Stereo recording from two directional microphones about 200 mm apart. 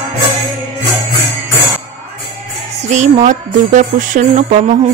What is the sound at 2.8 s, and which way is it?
Jingle bell, 35° right (ahead or behind).